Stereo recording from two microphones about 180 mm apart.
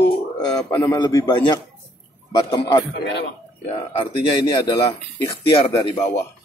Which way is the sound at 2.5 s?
25° left (ahead or behind).